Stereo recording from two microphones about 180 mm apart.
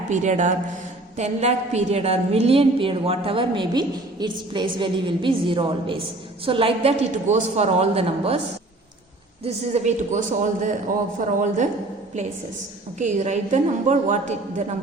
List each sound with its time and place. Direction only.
0.1 s a man's voice: 40° right (ahead or behind)
9.4 s a man's voice: 35° right (ahead or behind)
13.0 s a woman's voice: 40° right (ahead or behind)